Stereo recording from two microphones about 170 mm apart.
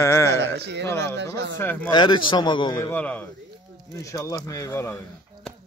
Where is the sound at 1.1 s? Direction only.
90° right.